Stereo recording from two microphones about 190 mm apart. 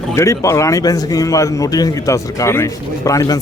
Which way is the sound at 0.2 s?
15° left (ahead or behind).